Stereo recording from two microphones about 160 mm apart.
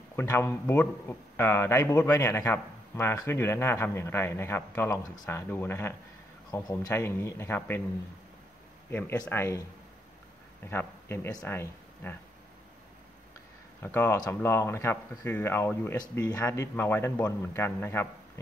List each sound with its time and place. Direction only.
0.1 s speech: 15° left (ahead or behind)
8.9 s speech: 15° left (ahead or behind)
10.7 s speech: 15° left (ahead or behind)
13.8 s speech: 15° left (ahead or behind)